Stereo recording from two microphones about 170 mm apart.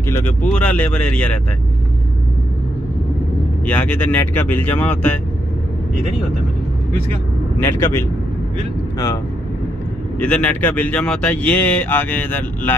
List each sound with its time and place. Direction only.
0.1 s speech: 10° left (ahead or behind)
3.6 s speech: 10° left (ahead or behind)
7.6 s speech: 15° left (ahead or behind)
10.1 s speech: 5° left (ahead or behind)